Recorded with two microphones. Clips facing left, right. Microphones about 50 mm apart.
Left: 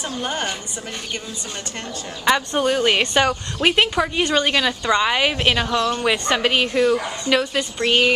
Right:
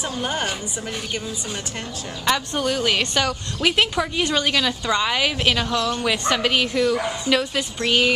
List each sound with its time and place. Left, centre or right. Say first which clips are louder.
0.0 s a woman's voice: even; centre
2.2 s a woman's voice: left 4 dB; centre
4.2 s a woman's voice: left 2 dB; centre